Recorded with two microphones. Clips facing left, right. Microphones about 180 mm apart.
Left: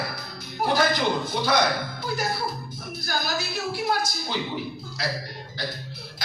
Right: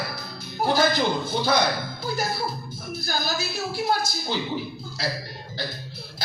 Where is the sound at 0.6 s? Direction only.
30° right (ahead or behind).